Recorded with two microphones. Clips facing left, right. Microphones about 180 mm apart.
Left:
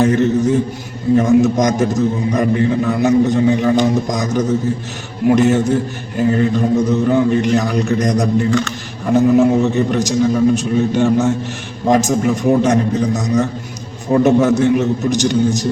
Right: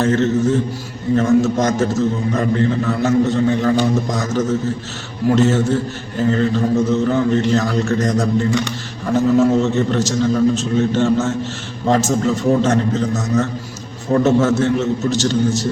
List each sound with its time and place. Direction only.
0.0 s a man's voice: 15° left (ahead or behind)